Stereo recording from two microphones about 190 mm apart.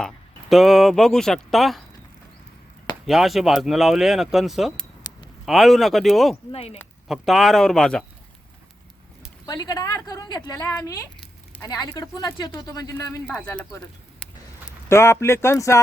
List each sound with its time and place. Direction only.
0.5 s speech: centre (ahead or behind)
3.1 s speech: centre (ahead or behind)
6.5 s speech: 30° left (ahead or behind)
7.1 s speech: centre (ahead or behind)
9.5 s speech: 20° left (ahead or behind)
11.2 s a sound: 10° left (ahead or behind)
11.7 s speech: 20° left (ahead or behind)
14.8 s speech: 15° left (ahead or behind)